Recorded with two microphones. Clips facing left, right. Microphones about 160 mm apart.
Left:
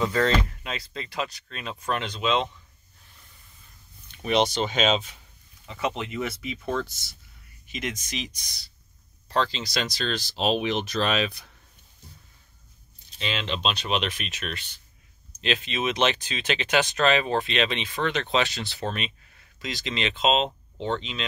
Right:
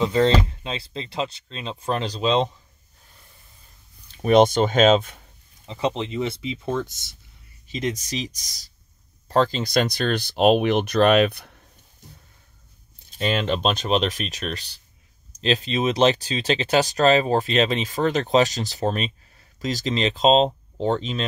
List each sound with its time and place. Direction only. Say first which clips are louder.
0.0 s speech: right 4 dB; 25° right (ahead or behind)
4.1 s speech: right 8 dB; 45° right (ahead or behind)
5.7 s speech: right 4 dB; 30° right (ahead or behind)
7.6 s speech: right 6 dB; 35° right (ahead or behind); by 11.5 s 60° right (ahead or behind)
13.2 s speech: right 7 dB; 45° right (ahead or behind)